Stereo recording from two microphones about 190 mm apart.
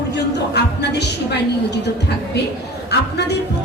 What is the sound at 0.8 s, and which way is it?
A woman's voice, 65° left (ahead or behind).